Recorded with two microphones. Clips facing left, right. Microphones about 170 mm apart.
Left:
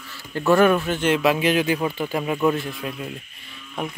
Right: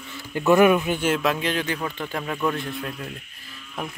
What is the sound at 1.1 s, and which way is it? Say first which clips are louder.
Speech: left 5 dB; 5° left (ahead or behind).